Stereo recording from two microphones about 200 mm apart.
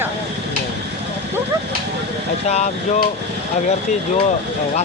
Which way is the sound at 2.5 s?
35° left (ahead or behind).